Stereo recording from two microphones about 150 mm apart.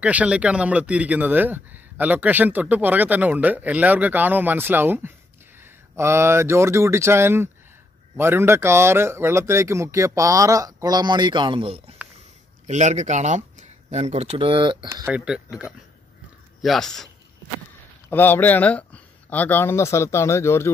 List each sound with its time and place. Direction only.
0.0 s speech: 10° right (ahead or behind); by 11.8 s 35° right (ahead or behind)
12.6 s speech: 50° right (ahead or behind); by 14.9 s 35° right (ahead or behind)
14.9 s a man's voice: 15° right (ahead or behind); by 17.1 s centre (ahead or behind)
18.1 s speech: 15° left (ahead or behind)